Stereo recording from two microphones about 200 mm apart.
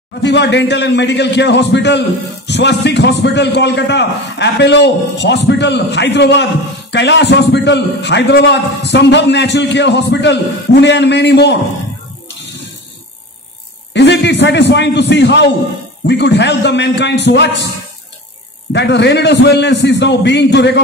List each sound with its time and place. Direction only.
0.2 s a man's voice: 60° left (ahead or behind)
13.9 s a man's voice: 60° left (ahead or behind)
18.7 s a man's voice: 60° left (ahead or behind)